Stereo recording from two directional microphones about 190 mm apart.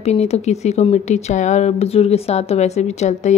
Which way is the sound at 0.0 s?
35° left (ahead or behind).